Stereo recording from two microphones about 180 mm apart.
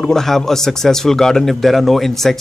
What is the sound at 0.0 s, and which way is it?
Speech, centre (ahead or behind).